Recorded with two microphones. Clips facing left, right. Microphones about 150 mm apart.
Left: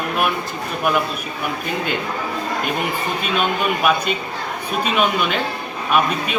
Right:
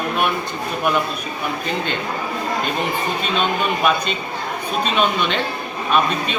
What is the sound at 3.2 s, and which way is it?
Speech, 10° left (ahead or behind).